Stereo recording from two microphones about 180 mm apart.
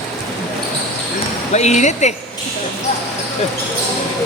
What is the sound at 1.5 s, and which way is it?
Speech, 40° left (ahead or behind).